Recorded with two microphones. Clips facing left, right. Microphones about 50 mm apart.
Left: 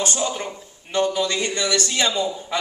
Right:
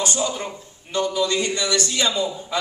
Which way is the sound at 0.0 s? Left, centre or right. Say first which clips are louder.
Even; left.